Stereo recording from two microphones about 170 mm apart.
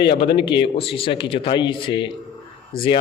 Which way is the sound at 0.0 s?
70° left (ahead or behind).